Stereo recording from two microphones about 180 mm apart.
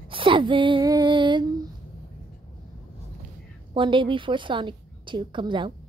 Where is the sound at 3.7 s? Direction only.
25° right (ahead or behind).